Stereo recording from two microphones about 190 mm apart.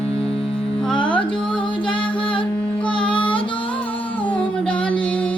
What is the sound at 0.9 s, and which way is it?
Music, 25° left (ahead or behind).